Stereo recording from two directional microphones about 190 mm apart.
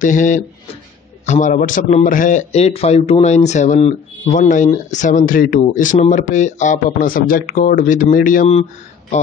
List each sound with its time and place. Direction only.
0.0 s a man's voice: 45° left (ahead or behind)